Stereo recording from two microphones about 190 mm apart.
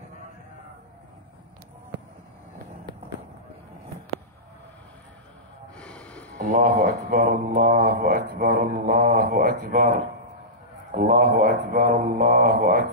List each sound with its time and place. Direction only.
5.8 s music: 5° left (ahead or behind)
6.3 s speech: 45° right (ahead or behind)